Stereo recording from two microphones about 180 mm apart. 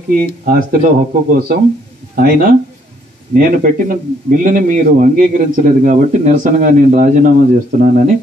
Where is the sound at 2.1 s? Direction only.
50° right (ahead or behind).